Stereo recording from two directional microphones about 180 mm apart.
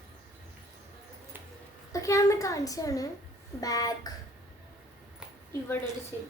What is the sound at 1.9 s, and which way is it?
A woman's voice, 15° left (ahead or behind).